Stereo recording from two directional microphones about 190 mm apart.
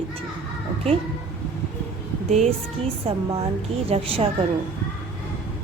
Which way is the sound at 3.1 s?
35° right (ahead or behind).